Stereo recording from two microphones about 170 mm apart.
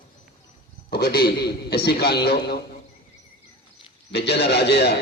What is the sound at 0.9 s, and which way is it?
A man's voice, 65° left (ahead or behind).